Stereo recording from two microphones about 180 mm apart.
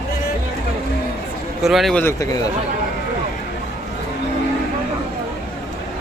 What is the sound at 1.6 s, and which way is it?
Speech, centre (ahead or behind).